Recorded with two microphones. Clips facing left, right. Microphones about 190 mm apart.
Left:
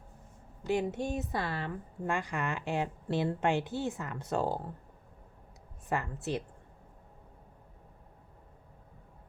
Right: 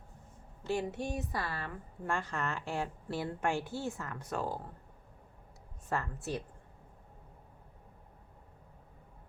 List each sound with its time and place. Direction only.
0.6 s a woman's voice: 20° left (ahead or behind)
5.9 s a woman's voice: 20° left (ahead or behind)